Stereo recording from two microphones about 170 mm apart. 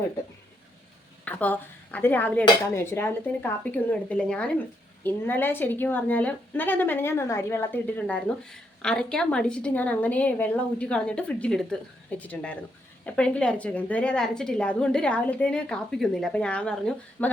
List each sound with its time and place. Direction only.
1.2 s a woman's voice: 10° left (ahead or behind)